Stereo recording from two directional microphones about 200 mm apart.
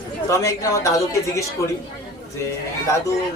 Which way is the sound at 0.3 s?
15° left (ahead or behind).